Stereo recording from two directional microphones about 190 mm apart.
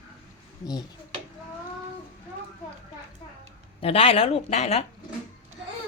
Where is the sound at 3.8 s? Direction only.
30° left (ahead or behind).